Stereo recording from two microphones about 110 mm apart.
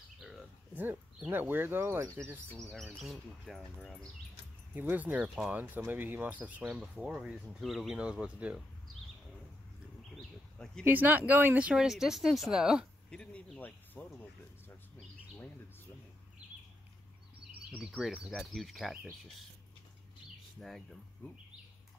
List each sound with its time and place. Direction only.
0.2 s a sound: 5° right (ahead or behind)
0.7 s speech: 15° right (ahead or behind)
3.0 s speech: centre (ahead or behind)
4.7 s speech: 15° right (ahead or behind)
10.1 s a sound: 5° left (ahead or behind)
10.8 s speech: 15° right (ahead or behind)
13.1 s speech: 10° left (ahead or behind)
17.6 s speech: 5° right (ahead or behind)
20.6 s speech: 5° left (ahead or behind)